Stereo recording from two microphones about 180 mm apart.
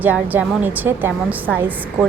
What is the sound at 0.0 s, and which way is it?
A woman's voice, 10° right (ahead or behind).